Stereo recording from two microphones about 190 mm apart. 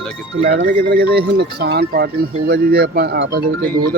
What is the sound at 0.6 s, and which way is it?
Speech, 50° right (ahead or behind).